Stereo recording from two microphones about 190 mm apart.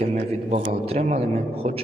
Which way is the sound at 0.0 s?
35° right (ahead or behind).